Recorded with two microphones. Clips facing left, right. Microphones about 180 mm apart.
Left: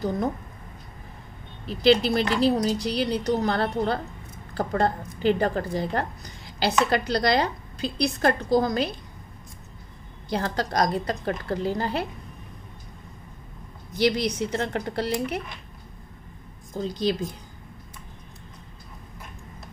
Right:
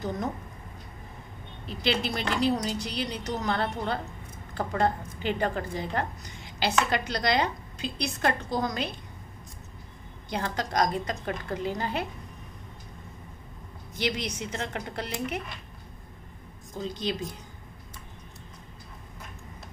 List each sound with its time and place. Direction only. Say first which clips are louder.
1.7 s a woman's voice: left 9 dB; 35° left (ahead or behind)
10.3 s a woman's voice: left 3 dB; 35° left (ahead or behind)
13.9 s a woman's voice: left 8 dB; 35° left (ahead or behind)
16.9 s a woman's voice: left 7 dB; 35° left (ahead or behind)